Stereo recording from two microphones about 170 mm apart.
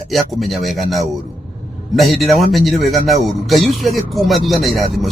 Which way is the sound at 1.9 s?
Centre (ahead or behind).